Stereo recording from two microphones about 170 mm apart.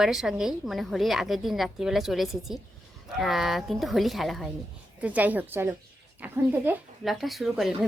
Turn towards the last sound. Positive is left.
turn(degrees=0)  # may be behind; listen again after turning